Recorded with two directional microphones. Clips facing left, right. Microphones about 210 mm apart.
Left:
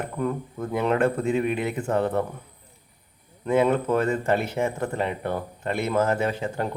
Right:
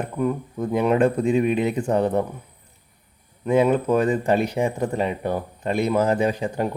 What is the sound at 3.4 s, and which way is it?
Speech, 15° right (ahead or behind).